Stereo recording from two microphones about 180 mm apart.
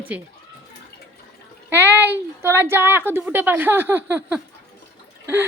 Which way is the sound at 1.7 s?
10° right (ahead or behind).